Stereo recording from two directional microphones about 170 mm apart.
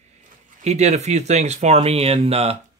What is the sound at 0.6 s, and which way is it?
Speech, 40° right (ahead or behind).